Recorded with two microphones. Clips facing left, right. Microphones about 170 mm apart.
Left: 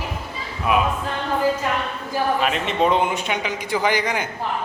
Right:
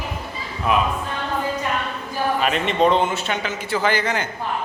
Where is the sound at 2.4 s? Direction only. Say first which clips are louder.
Right 2 dB; centre (ahead or behind).